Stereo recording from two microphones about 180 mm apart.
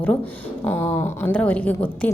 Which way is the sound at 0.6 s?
10° left (ahead or behind).